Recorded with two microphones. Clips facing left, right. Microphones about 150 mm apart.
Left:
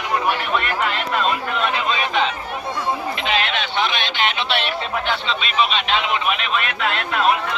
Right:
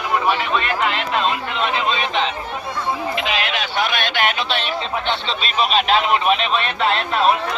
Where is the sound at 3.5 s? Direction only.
45° right (ahead or behind).